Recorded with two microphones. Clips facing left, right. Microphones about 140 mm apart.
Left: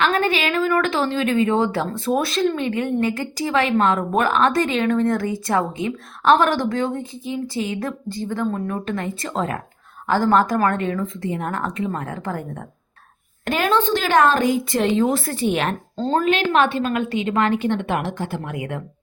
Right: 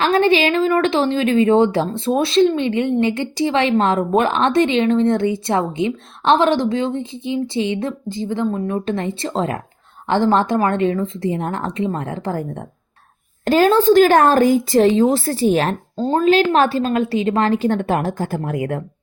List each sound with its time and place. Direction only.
0.0 s a woman's voice: 30° right (ahead or behind)
16.0 s speech: 15° right (ahead or behind)
16.2 s a woman's voice: 35° right (ahead or behind)